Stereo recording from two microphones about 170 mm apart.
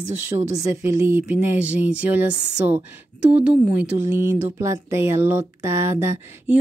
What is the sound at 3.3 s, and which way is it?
Speech, 10° right (ahead or behind).